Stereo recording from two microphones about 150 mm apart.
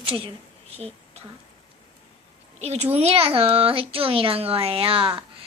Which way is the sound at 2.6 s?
45° right (ahead or behind).